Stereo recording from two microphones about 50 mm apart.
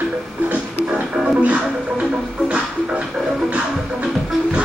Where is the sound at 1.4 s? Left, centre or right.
Right.